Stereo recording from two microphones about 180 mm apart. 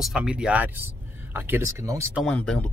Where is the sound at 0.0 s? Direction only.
5° right (ahead or behind).